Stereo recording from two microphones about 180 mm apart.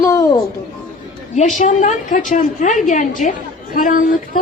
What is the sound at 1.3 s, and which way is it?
A woman's voice, 45° left (ahead or behind).